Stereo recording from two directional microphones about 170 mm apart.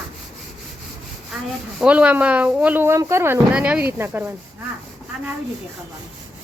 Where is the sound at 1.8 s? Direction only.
5° right (ahead or behind).